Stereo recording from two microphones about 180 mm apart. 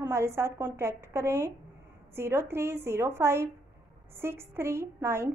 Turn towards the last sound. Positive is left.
turn(degrees=-15)  # may be behind; listen again after turning